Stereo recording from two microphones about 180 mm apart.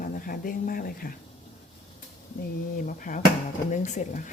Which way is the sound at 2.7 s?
50° left (ahead or behind).